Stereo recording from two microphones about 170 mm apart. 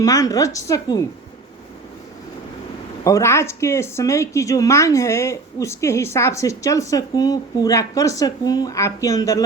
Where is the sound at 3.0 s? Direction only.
15° left (ahead or behind).